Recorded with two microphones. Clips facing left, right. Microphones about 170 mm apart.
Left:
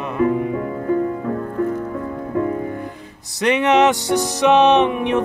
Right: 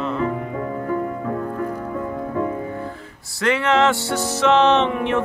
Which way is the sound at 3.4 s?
20° left (ahead or behind).